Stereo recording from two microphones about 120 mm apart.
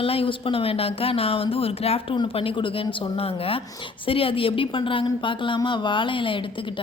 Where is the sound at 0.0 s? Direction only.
50° left (ahead or behind).